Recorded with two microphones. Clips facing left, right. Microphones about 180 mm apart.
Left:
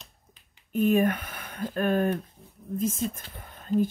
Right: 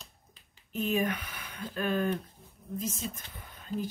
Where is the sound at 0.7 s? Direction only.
50° left (ahead or behind).